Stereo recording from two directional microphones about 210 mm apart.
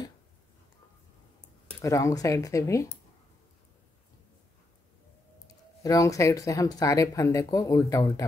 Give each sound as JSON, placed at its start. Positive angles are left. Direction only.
{"t": 1.8, "sound": "speech", "side_deg": 15}
{"t": 5.8, "sound": "speech", "side_deg": 15}